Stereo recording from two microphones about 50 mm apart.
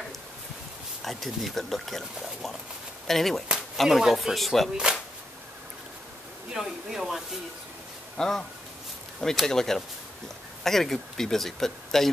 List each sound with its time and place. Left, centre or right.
1.0 s speech: centre
3.5 s chop: centre
4.1 s speech: centre
4.9 s speech: centre
6.5 s speech: centre
8.2 s speech: centre
9.5 s speech: centre